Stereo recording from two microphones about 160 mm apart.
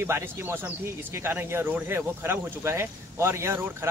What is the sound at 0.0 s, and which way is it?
A man's voice, 15° right (ahead or behind).